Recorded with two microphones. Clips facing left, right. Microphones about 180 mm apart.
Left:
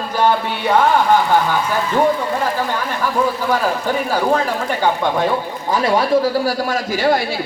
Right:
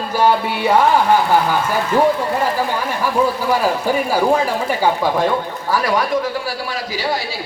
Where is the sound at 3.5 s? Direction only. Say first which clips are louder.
Right 1 dB; 10° right (ahead or behind).